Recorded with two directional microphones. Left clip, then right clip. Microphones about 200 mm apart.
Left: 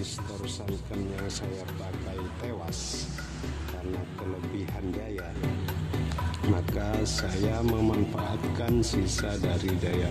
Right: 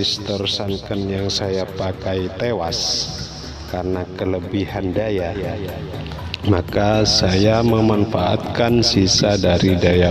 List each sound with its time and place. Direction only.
0.0 s a man's voice: 35° right (ahead or behind)
4.6 s a man's voice: 35° right (ahead or behind)
6.5 s a man's voice: 30° right (ahead or behind)